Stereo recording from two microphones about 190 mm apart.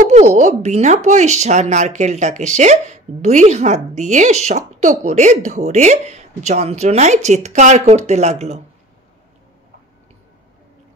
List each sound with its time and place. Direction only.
0.0 s speech: 40° right (ahead or behind)